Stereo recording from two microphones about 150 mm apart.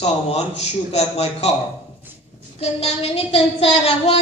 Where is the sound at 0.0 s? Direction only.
45° left (ahead or behind).